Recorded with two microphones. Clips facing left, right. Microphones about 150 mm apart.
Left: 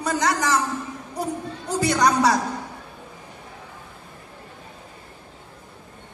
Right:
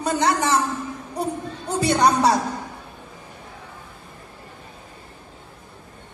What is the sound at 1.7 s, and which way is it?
Speech, 25° right (ahead or behind).